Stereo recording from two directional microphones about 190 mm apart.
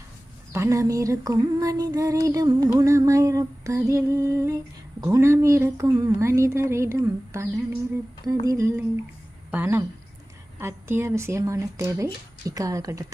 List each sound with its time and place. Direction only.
0.5 s female singing: 15° right (ahead or behind)